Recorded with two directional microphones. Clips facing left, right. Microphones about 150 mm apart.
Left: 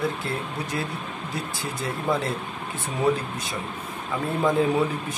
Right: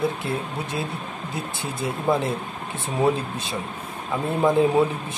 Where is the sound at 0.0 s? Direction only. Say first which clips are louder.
Right 2 dB; 25° right (ahead or behind).